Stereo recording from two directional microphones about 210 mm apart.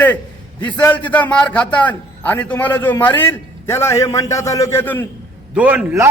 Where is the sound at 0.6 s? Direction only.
10° left (ahead or behind).